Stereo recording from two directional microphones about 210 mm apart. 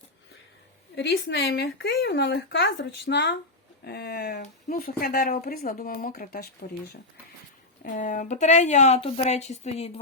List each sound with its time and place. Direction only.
0.9 s speech: 55° left (ahead or behind)
7.9 s speech: 40° left (ahead or behind)